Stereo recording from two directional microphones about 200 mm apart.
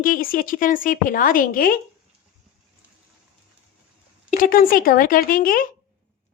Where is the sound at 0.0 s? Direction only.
45° left (ahead or behind).